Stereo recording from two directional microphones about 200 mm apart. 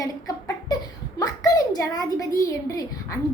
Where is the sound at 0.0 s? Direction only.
15° left (ahead or behind).